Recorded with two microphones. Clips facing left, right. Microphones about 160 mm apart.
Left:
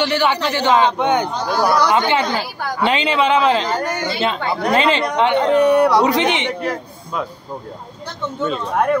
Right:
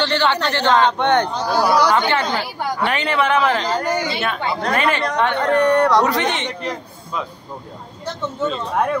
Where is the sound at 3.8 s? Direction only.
10° right (ahead or behind).